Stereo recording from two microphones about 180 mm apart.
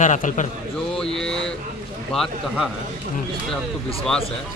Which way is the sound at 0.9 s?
5° left (ahead or behind).